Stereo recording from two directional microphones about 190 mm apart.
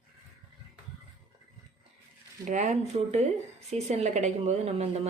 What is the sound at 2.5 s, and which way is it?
A woman's voice, 40° right (ahead or behind).